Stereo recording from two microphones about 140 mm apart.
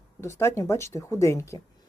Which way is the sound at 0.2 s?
20° left (ahead or behind).